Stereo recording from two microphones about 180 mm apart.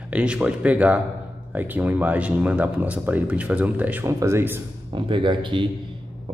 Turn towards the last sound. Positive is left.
turn(degrees=-25)  # may be behind; listen again after turning